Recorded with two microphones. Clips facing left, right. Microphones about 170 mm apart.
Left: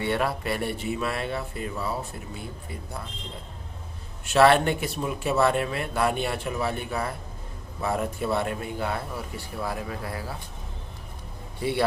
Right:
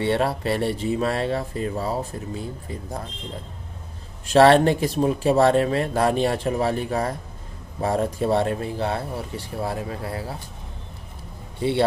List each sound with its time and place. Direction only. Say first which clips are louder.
0.0 s speech: right 4 dB; 30° right (ahead or behind)
4.3 s speech: right 4 dB; 35° right (ahead or behind)
11.6 s speech: right 4 dB; 25° right (ahead or behind)